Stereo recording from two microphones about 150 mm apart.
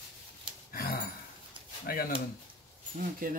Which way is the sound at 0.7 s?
80° left.